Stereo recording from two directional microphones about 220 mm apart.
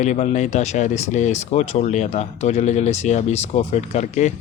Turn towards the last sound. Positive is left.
turn(degrees=35)  # may be behind; listen again after turning